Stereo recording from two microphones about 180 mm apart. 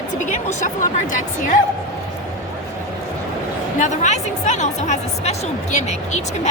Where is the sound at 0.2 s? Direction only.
45° left (ahead or behind).